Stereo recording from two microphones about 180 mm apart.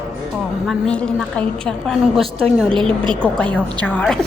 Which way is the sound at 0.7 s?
5° left (ahead or behind).